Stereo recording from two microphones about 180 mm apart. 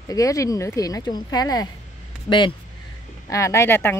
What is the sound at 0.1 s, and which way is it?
A woman's voice, 20° left (ahead or behind).